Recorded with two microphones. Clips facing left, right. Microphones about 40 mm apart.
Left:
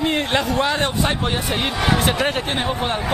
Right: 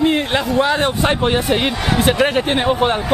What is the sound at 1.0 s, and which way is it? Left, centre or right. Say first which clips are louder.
A man's voice: right 6 dB; centre.